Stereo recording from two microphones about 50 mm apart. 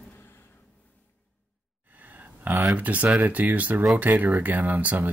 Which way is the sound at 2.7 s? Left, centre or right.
Right.